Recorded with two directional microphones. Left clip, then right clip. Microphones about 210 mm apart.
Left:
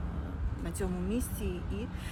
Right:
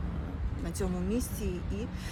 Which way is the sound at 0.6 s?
Centre (ahead or behind).